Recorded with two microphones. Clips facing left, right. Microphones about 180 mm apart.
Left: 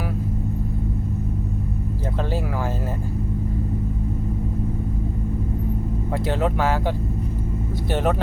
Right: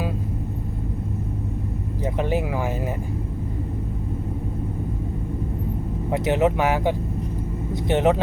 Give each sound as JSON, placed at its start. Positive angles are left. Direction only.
{"t": 6.1, "sound": "speech", "side_deg": -20}